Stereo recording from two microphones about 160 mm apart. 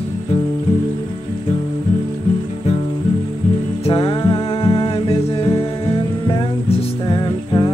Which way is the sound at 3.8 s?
35° left (ahead or behind).